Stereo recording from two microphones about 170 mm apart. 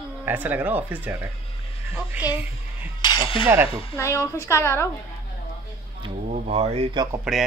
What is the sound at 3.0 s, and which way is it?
Cutlery, 25° left (ahead or behind).